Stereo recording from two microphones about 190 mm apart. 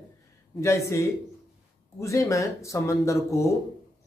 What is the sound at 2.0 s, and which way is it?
Speech, 15° left (ahead or behind).